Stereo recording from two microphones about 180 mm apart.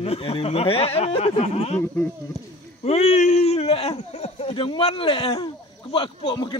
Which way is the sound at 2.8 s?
35° left (ahead or behind).